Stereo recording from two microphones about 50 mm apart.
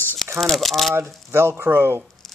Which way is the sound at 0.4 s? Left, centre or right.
Centre.